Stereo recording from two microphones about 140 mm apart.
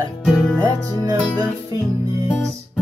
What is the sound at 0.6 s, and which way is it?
Music, 25° right (ahead or behind).